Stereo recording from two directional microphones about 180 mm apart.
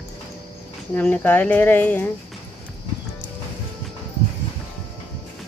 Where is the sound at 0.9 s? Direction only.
10° left (ahead or behind).